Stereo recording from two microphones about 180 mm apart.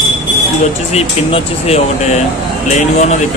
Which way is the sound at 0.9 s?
35° left (ahead or behind).